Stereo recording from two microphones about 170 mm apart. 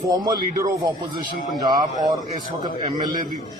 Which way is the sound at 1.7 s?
20° right (ahead or behind).